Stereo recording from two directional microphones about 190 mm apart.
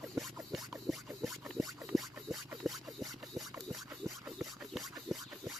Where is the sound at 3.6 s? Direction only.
Centre (ahead or behind).